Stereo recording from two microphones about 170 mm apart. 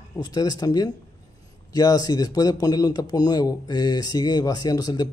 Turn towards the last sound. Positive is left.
turn(degrees=25)  # may be behind; listen again after turning